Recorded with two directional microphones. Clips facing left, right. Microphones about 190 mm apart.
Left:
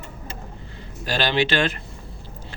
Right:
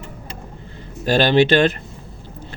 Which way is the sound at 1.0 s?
45° right (ahead or behind).